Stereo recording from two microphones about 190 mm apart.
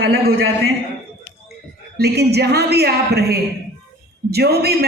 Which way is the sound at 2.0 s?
60° right (ahead or behind).